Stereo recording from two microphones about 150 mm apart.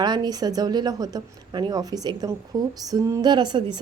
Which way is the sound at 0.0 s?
30° right (ahead or behind).